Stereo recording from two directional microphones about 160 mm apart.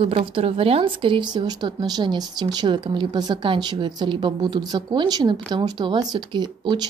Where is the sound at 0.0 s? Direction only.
35° right (ahead or behind).